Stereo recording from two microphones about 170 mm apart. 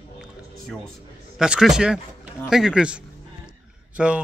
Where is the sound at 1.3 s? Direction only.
5° right (ahead or behind).